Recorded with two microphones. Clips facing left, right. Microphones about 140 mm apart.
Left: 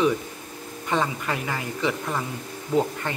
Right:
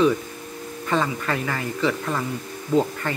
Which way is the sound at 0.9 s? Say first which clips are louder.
Right 2 dB; 15° left (ahead or behind).